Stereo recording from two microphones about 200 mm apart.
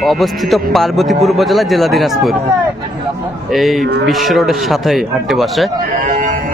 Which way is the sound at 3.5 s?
Centre (ahead or behind).